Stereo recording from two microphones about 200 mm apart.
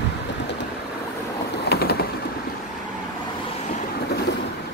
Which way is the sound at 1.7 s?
50° left (ahead or behind).